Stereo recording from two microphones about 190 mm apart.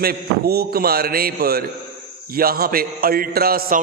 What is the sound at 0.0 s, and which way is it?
A man's voice, 55° right (ahead or behind).